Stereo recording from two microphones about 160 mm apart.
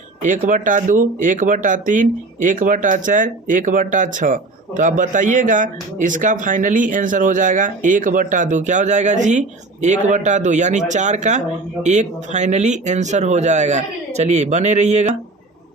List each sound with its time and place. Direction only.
0.2 s speech: 50° right (ahead or behind)